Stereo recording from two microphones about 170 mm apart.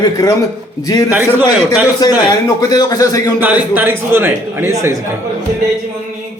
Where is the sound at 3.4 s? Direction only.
10° right (ahead or behind).